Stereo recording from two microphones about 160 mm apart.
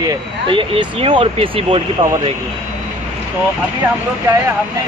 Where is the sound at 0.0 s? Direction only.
25° right (ahead or behind).